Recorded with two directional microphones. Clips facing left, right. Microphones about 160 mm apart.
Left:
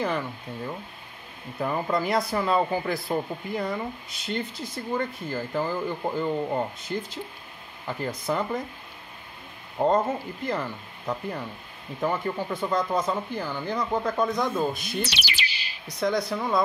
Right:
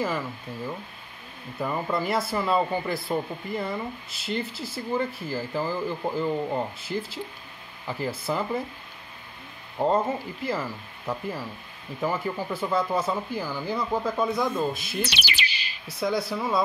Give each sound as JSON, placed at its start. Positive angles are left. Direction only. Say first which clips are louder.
{"t": 0.0, "sound": "speech", "louder": "left 1 dB", "side_deg": -5}
{"t": 9.8, "sound": "speech", "louder": "left 1 dB", "side_deg": -5}
{"t": 15.0, "sound": "music", "louder": "right 1 dB", "side_deg": -60}
{"t": 15.9, "sound": "speech", "louder": "left 1 dB", "side_deg": -5}